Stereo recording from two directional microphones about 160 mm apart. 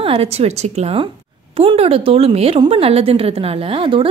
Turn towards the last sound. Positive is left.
turn(degrees=-35)  # may be behind; listen again after turning